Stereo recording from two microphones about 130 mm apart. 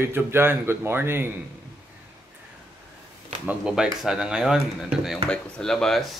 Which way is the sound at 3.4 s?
5° right (ahead or behind).